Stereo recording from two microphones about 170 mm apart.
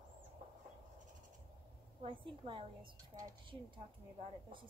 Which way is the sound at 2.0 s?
30° right (ahead or behind).